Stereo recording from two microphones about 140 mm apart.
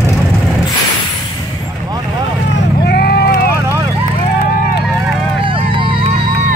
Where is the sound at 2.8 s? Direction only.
90° left.